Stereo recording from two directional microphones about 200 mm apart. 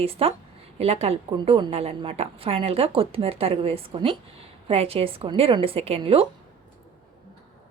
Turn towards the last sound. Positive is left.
turn(degrees=-30)  # may be behind; listen again after turning